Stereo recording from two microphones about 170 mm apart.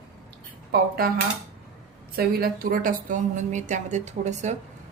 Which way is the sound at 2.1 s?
65° right (ahead or behind).